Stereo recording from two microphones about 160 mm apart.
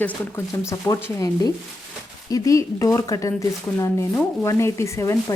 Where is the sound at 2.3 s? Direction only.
20° left (ahead or behind).